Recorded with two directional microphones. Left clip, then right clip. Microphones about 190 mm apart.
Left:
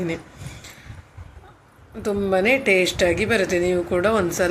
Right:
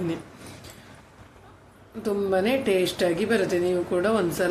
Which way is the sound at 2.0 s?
10° left (ahead or behind).